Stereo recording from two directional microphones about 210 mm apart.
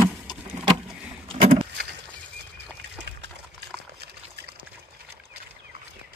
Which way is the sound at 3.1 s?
55° right (ahead or behind).